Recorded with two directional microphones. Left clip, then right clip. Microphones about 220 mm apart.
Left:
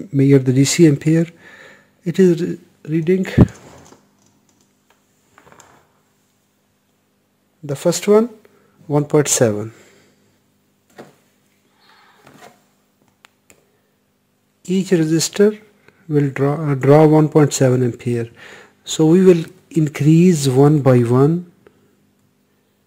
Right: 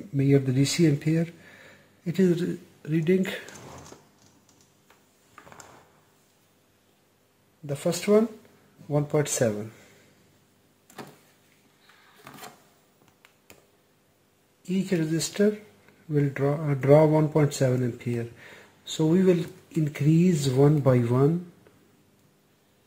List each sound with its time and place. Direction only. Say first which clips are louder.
0.1 s speech: left 10 dB; 50° left (ahead or behind); by 3.3 s 35° left (ahead or behind)
7.6 s speech: left 10 dB; 50° left (ahead or behind)
13.2 s finger snapping: left 9 dB; 50° left (ahead or behind)
14.6 s speech: left 11 dB; 50° left (ahead or behind)